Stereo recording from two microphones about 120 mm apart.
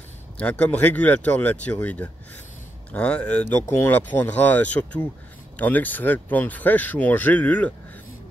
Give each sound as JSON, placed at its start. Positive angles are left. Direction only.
{"t": 0.4, "sound": "speech", "side_deg": 15}